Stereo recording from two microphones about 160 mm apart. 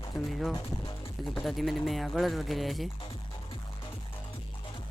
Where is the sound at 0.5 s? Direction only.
30° left (ahead or behind).